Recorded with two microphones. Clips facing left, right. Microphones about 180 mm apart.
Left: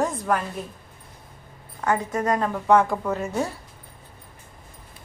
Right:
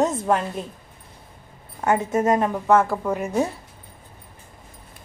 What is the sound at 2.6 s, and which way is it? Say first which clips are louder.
Speech: left 3 dB; 5° right (ahead or behind).